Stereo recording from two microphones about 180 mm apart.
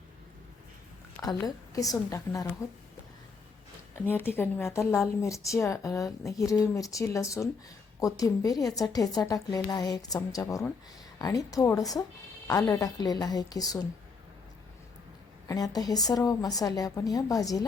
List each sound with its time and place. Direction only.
1.2 s a woman's voice: 20° left (ahead or behind)
3.9 s a woman's voice: 10° left (ahead or behind)
15.4 s a woman's voice: 20° left (ahead or behind)